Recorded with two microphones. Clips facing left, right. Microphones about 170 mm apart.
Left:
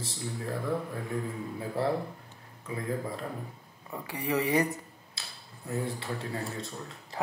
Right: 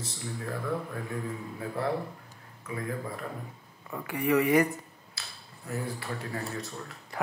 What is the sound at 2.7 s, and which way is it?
Mantra, 25° left (ahead or behind).